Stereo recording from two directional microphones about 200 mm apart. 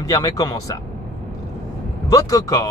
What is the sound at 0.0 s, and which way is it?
Speech, 15° left (ahead or behind).